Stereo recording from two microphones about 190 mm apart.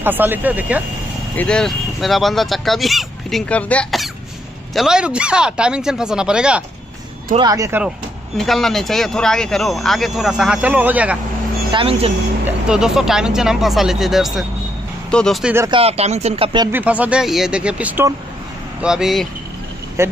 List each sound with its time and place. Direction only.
0.0 s speech: 10° right (ahead or behind)
1.3 s speech: 5° left (ahead or behind)
7.3 s speech: 20° right (ahead or behind)
8.4 s speech: centre (ahead or behind)
11.7 s speech: 30° right (ahead or behind)
12.4 s speech: 5° right (ahead or behind)
15.7 s speech: 30° right (ahead or behind)
16.7 s speech: 10° right (ahead or behind)
20.0 s speech: 15° right (ahead or behind)